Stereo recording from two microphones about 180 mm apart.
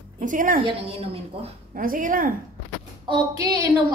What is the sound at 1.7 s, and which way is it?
Speech, 50° right (ahead or behind).